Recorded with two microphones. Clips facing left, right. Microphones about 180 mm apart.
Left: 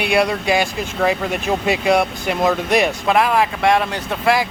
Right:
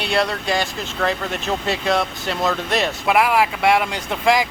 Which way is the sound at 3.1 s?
10° right (ahead or behind).